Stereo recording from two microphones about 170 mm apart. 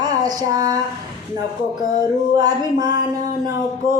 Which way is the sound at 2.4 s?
25° right (ahead or behind).